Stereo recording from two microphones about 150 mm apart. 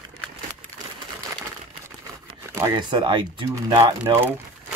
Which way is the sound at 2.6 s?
30° right (ahead or behind).